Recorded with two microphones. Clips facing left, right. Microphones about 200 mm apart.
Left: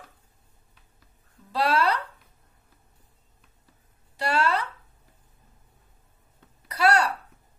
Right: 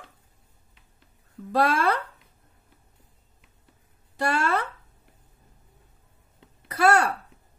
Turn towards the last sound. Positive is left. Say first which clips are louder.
# right 2 dB
turn(degrees=-50)  # may be behind; listen again after turning